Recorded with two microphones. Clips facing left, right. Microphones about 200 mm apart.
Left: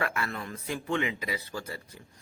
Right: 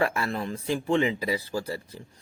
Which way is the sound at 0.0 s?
30° right (ahead or behind).